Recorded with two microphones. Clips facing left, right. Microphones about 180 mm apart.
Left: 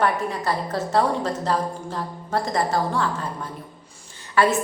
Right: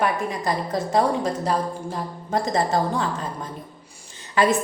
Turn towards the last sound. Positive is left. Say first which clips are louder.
# even
turn(degrees=-20)  # may be behind; listen again after turning